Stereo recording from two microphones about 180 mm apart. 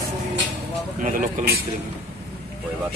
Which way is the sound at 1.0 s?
50° right (ahead or behind).